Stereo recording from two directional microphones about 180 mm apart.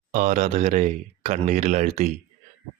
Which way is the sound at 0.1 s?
45° right (ahead or behind).